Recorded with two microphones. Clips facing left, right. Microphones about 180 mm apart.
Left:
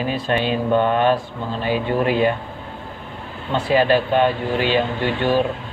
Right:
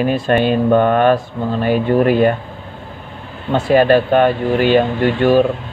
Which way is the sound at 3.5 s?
50° right (ahead or behind).